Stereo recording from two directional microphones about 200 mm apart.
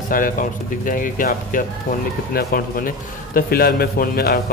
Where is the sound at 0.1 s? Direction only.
40° left (ahead or behind).